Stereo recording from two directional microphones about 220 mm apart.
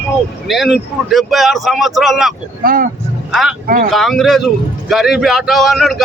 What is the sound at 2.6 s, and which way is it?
Speech, 40° right (ahead or behind).